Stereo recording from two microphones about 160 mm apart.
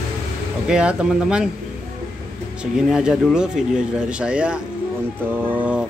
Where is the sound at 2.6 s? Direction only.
5° right (ahead or behind).